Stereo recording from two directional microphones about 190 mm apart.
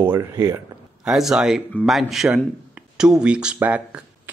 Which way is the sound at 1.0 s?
Centre (ahead or behind).